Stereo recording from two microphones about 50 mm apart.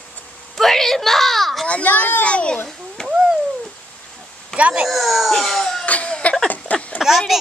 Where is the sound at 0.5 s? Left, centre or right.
Centre.